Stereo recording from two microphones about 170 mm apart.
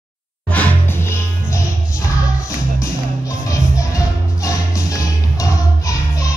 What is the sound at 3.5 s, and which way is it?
Music, 20° left (ahead or behind).